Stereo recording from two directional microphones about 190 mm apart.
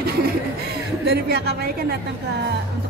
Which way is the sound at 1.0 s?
60° right (ahead or behind).